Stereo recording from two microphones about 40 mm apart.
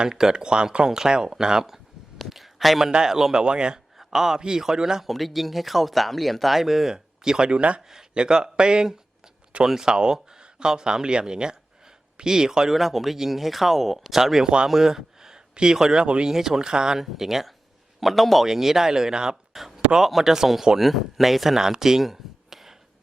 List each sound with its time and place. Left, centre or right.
0.0 s a man's voice: centre
3.4 s speech: right
3.9 s a man's voice: centre
5.0 s speech: centre
12.7 s a man's voice: centre
16.0 s speech: right
16.3 s a man's voice: centre
17.0 s a man's voice: centre
19.5 s a sound: centre
20.0 s a man's voice: centre